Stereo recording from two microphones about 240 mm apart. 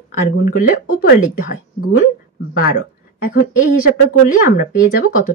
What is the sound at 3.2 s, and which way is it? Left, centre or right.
Speech, left.